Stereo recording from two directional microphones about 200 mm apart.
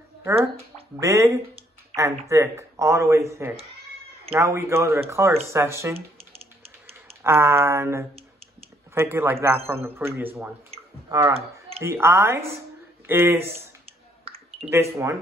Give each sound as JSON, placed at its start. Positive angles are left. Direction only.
{"t": 0.9, "sound": "speech", "side_deg": -15}
{"t": 5.9, "sound": "typing", "side_deg": -30}
{"t": 7.2, "sound": "speech", "side_deg": -10}
{"t": 14.2, "sound": "a sound", "side_deg": -30}
{"t": 14.7, "sound": "speech", "side_deg": -15}